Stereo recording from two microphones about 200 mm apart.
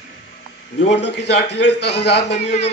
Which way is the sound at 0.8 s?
60° left (ahead or behind).